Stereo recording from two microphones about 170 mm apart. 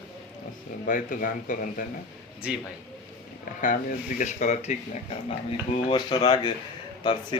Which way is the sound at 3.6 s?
50° left (ahead or behind).